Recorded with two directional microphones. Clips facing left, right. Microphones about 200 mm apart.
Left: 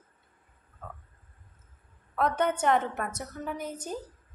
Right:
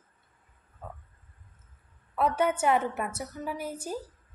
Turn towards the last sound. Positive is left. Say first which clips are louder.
# right 1 dB
turn(degrees=-10)  # may be behind; listen again after turning